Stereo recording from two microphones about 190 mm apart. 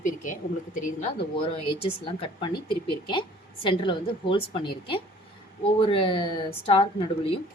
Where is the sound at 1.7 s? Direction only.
30° left (ahead or behind).